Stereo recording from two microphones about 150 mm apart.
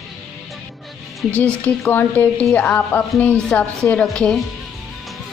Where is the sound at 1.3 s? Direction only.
10° left (ahead or behind).